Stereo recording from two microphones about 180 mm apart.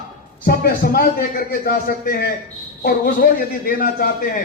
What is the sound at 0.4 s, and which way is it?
A man's voice, 55° left (ahead or behind).